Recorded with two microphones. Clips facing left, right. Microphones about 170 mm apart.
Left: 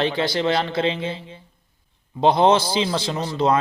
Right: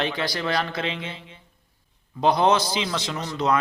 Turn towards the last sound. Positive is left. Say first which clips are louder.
# left 4 dB
turn(degrees=30)  # may be behind; listen again after turning